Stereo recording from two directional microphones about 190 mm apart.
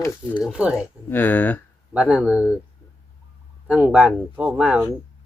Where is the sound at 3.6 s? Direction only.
10° right (ahead or behind).